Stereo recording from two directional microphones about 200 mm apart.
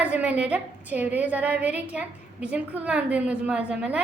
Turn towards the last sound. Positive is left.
turn(degrees=-5)  # may be behind; listen again after turning